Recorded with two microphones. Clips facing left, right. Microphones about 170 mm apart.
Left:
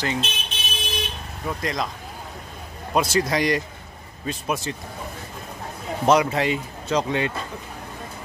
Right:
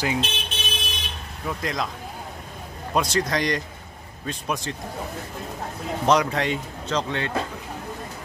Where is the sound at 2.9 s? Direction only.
5° left (ahead or behind).